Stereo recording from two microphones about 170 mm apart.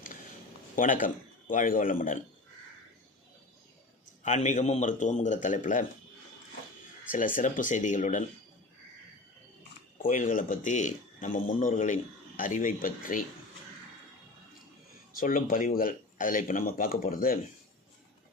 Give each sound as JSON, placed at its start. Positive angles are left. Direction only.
{"t": 0.8, "sound": "speech", "side_deg": 50}
{"t": 4.2, "sound": "speech", "side_deg": 45}
{"t": 7.3, "sound": "speech", "side_deg": 50}
{"t": 10.0, "sound": "speech", "side_deg": 50}
{"t": 15.2, "sound": "speech", "side_deg": 55}